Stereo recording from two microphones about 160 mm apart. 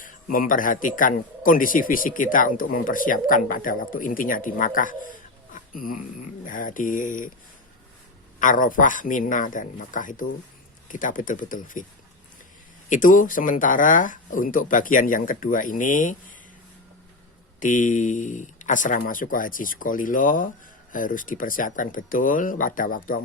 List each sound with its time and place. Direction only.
0.0 s a man's voice: 60° left (ahead or behind)
5.5 s a sound: 60° left (ahead or behind)
6.4 s a man's voice: 55° left (ahead or behind)
8.4 s a man's voice: 55° left (ahead or behind)
12.9 s a man's voice: 55° left (ahead or behind)
17.6 s a man's voice: 55° left (ahead or behind)